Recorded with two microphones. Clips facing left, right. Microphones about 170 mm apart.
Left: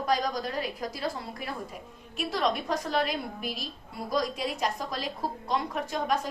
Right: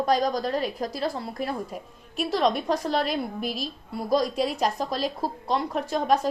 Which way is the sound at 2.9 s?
40° right (ahead or behind).